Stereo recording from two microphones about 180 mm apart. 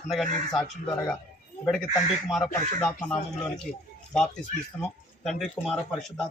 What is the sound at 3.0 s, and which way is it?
Speech, 5° left (ahead or behind).